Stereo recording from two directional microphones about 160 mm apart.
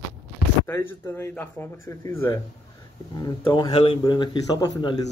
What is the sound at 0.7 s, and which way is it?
Speech, 15° left (ahead or behind).